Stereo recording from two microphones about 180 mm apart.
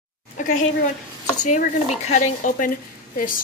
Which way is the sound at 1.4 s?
45° left (ahead or behind).